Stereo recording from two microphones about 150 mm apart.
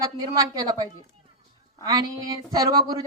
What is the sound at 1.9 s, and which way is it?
A woman's voice, 25° right (ahead or behind).